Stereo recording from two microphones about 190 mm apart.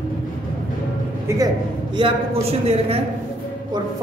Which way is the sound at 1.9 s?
30° right (ahead or behind).